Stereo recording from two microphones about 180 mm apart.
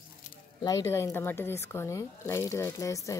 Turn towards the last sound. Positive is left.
turn(degrees=20)  # may be behind; listen again after turning